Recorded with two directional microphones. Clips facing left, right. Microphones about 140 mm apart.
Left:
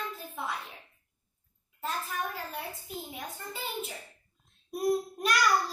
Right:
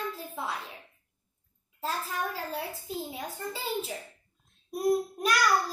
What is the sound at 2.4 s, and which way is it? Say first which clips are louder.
Child singing: right 4 dB; 30° right (ahead or behind).